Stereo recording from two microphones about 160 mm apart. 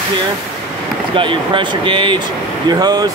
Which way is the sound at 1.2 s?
30° right (ahead or behind).